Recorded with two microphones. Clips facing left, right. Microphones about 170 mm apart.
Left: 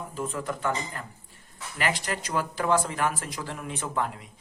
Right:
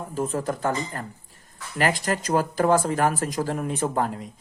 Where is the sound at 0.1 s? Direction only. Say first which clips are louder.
Right 7 dB; 40° right (ahead or behind).